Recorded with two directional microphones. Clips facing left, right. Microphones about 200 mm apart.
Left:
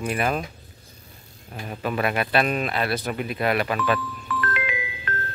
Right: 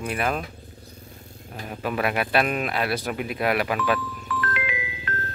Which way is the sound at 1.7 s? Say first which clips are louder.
Left 1 dB; 5° right (ahead or behind).